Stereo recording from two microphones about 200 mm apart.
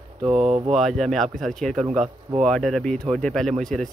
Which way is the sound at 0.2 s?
30° right (ahead or behind).